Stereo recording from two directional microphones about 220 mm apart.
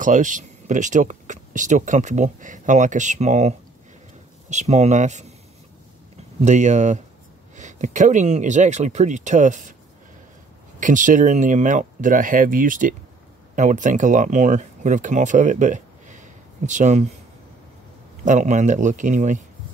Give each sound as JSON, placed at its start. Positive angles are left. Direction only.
{"t": 0.0, "sound": "speech", "side_deg": -35}
{"t": 6.4, "sound": "speech", "side_deg": -30}
{"t": 10.8, "sound": "speech", "side_deg": -35}
{"t": 18.2, "sound": "speech", "side_deg": -35}